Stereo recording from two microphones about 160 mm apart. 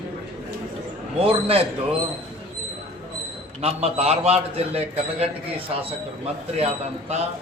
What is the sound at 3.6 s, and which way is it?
A man's voice, 40° right (ahead or behind).